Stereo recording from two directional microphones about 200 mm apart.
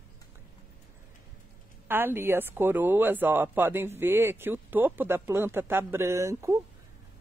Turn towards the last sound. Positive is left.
turn(degrees=-15)  # may be behind; listen again after turning